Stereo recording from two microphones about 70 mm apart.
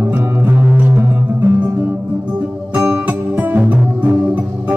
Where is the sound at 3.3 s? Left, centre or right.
Right.